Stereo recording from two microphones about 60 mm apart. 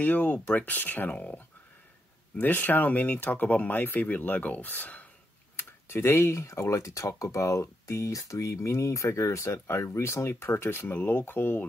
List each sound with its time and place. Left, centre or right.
0.0 s speech: left
5.6 s speech: left